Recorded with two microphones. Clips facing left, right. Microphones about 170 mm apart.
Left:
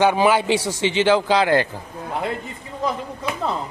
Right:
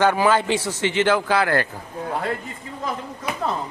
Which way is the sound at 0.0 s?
15° left (ahead or behind).